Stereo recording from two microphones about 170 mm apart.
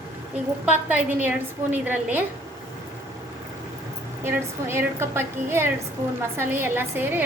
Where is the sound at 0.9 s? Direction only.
10° right (ahead or behind).